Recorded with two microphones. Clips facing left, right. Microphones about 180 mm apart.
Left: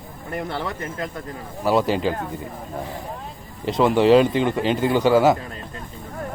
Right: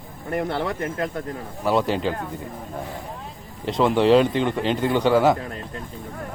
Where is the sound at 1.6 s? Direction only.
5° left (ahead or behind).